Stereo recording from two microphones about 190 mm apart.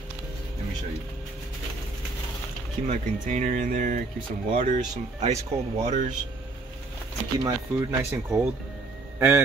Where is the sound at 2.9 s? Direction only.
40° right (ahead or behind).